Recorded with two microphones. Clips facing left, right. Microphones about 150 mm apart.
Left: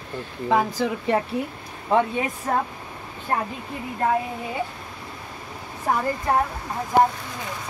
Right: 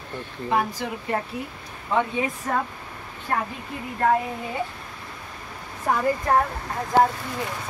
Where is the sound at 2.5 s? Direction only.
35° left (ahead or behind).